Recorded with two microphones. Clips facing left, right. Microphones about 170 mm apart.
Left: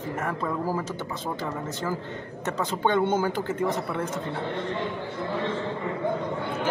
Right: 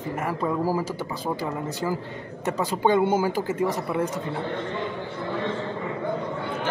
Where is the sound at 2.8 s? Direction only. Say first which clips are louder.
Right 3 dB; 10° right (ahead or behind).